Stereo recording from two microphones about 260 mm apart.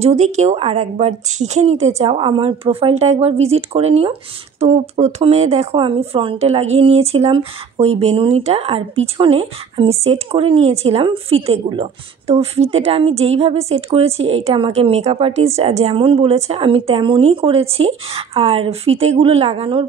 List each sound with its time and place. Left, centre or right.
0.0 s a woman's voice: right